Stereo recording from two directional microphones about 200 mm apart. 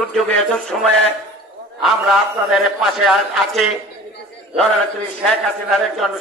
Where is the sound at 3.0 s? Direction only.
Centre (ahead or behind).